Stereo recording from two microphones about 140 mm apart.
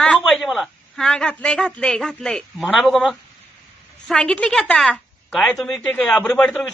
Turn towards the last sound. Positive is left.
turn(degrees=5)  # may be behind; listen again after turning